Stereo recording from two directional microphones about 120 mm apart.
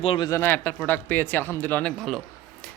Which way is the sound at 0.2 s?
25° left (ahead or behind).